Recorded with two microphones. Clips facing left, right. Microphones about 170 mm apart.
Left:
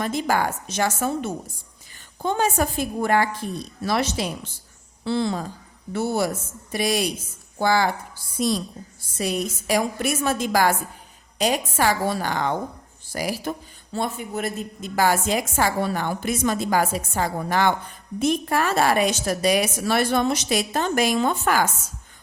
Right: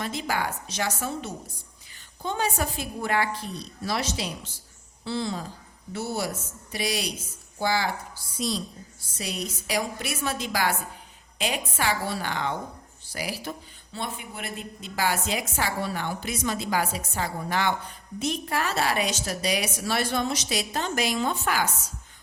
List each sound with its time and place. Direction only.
0.0 s a woman's voice: 50° left (ahead or behind)